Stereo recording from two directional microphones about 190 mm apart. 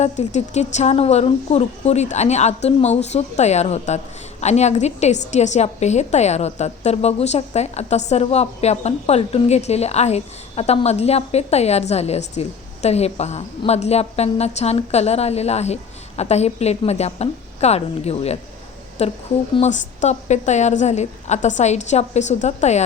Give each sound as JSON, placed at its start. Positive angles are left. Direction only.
{"t": 0.0, "sound": "speech", "side_deg": 40}